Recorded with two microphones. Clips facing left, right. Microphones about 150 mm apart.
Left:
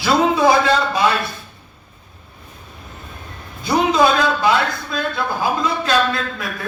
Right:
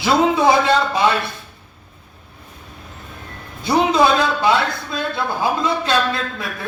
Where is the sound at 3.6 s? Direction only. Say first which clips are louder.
Even; 25° right (ahead or behind).